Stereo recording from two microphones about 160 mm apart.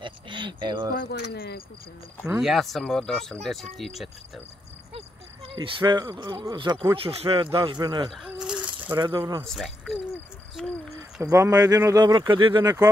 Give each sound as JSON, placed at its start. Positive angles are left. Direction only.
{"t": 0.0, "sound": "a sound", "side_deg": -30}
{"t": 0.9, "sound": "speech", "side_deg": 65}
{"t": 2.4, "sound": "speech", "side_deg": 0}
{"t": 5.6, "sound": "speech", "side_deg": -30}
{"t": 8.3, "sound": "a sound", "side_deg": -5}
{"t": 8.9, "sound": "speech", "side_deg": -30}
{"t": 9.5, "sound": "speech", "side_deg": 0}
{"t": 11.2, "sound": "speech", "side_deg": -20}